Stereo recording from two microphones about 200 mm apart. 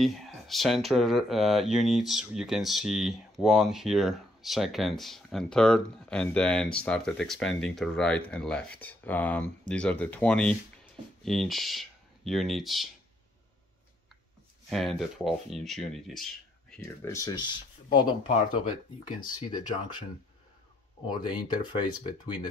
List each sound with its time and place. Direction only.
0.0 s speech: centre (ahead or behind)
14.7 s speech: centre (ahead or behind); by 18.3 s 25° left (ahead or behind)
19.4 s speech: 20° left (ahead or behind)
21.1 s speech: 20° left (ahead or behind)